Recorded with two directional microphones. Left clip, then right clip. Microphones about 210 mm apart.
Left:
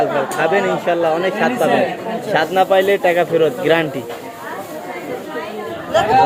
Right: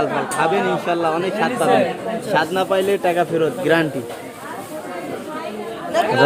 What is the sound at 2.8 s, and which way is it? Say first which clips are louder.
Speech: left 4 dB; 20° right (ahead or behind).